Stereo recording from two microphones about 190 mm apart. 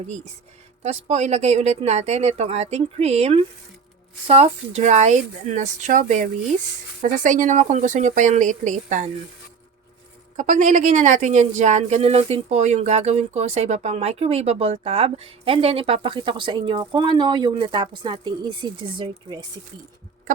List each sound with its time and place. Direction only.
0.8 s speech: 35° right (ahead or behind)
10.3 s speech: 40° right (ahead or behind); by 19.4 s 25° right (ahead or behind)